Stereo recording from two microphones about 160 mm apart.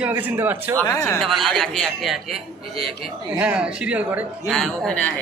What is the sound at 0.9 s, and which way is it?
Speech, 20° left (ahead or behind).